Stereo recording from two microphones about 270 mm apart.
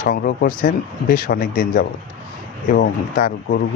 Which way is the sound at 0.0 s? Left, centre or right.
Left.